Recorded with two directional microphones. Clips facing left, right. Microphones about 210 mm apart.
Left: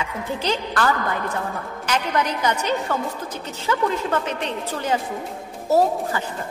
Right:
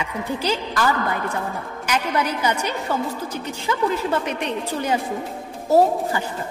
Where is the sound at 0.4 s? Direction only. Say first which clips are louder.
Left 1 dB; 10° right (ahead or behind).